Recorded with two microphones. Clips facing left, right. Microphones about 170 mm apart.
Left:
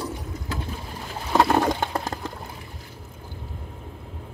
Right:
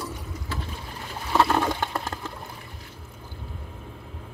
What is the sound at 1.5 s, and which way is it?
Sewing machine, 35° left (ahead or behind).